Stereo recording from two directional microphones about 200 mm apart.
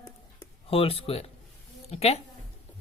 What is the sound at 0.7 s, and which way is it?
Speech, 30° left (ahead or behind).